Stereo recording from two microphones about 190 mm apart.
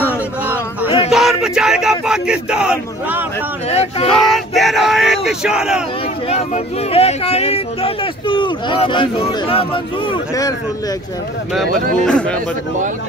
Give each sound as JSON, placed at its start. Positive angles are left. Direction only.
{"t": 0.8, "sound": "a sound", "side_deg": 30}
{"t": 1.1, "sound": "speech", "side_deg": 0}
{"t": 3.7, "sound": "speech", "side_deg": 30}
{"t": 4.1, "sound": "speech", "side_deg": 0}
{"t": 6.2, "sound": "speech", "side_deg": 30}
{"t": 12.0, "sound": "speech", "side_deg": 5}